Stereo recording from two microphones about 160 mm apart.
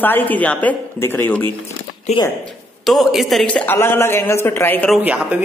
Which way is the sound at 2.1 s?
45° left (ahead or behind).